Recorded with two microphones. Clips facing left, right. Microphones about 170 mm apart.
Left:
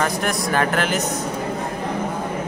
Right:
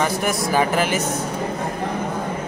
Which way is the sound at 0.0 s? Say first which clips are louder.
Right 1 dB; 5° right (ahead or behind).